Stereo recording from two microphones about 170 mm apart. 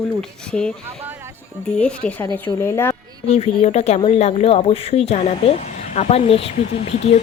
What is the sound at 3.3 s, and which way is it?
Speech, 40° left (ahead or behind).